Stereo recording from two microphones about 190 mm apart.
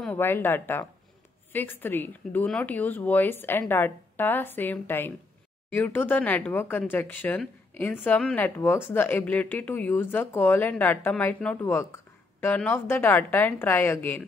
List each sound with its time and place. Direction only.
0.0 s speech: 10° left (ahead or behind)